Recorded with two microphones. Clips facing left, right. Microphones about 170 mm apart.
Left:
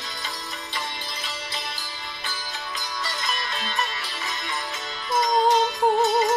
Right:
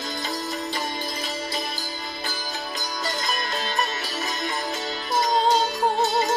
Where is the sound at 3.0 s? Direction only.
35° right (ahead or behind).